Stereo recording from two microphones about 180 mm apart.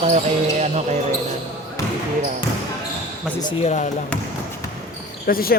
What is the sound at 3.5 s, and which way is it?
Speech, 35° left (ahead or behind).